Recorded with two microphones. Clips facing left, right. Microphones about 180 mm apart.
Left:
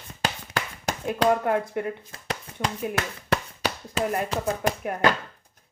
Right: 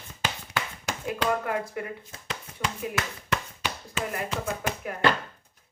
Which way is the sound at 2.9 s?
35° left (ahead or behind).